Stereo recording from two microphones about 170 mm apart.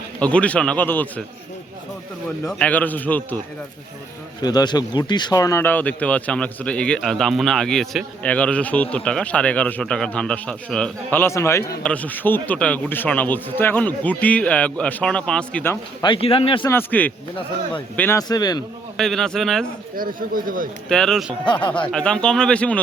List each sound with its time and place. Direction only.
0.2 s speech: 5° left (ahead or behind)
2.5 s speech: 5° left (ahead or behind)
4.4 s speech: 25° left (ahead or behind)
16.0 s a man's voice: 30° left (ahead or behind)
16.6 s speech: 10° left (ahead or behind)
18.2 s a man's voice: 25° left (ahead or behind)
18.9 s speech: centre (ahead or behind)
20.0 s speech: 55° right (ahead or behind)
20.9 s speech: 5° left (ahead or behind)
21.4 s a man's voice: 30° left (ahead or behind)
21.9 s speech: 5° left (ahead or behind)